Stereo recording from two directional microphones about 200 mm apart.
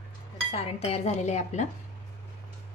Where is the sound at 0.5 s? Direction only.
30° left (ahead or behind).